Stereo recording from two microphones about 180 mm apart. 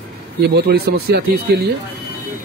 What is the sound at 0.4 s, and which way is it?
Speech, 65° right (ahead or behind).